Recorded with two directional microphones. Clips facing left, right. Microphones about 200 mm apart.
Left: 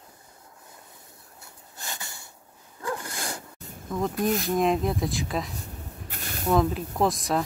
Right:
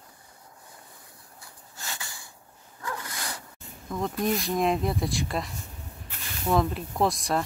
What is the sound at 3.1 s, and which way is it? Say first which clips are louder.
Dog: left 3 dB; 50° left (ahead or behind).